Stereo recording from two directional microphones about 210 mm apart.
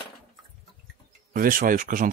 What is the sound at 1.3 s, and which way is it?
Speech, 45° right (ahead or behind).